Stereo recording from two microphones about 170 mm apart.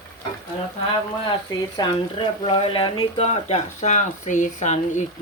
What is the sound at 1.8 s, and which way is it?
Speech, 25° left (ahead or behind).